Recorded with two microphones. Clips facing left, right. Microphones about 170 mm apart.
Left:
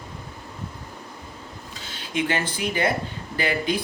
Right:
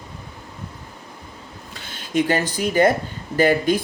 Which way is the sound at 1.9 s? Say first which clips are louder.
Right 6 dB; 45° right (ahead or behind).